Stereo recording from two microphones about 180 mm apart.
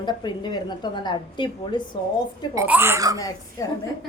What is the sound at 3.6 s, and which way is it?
Speech, 15° left (ahead or behind).